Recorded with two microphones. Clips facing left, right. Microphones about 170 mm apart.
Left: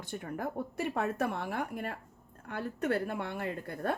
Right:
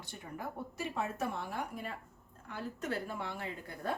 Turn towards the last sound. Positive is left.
turn(degrees=60)  # may be behind; listen again after turning